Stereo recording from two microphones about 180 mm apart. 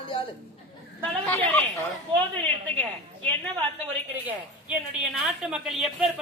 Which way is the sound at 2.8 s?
5° left (ahead or behind).